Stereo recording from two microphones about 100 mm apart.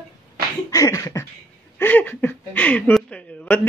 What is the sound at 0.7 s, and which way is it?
Beatboxing, 35° left (ahead or behind).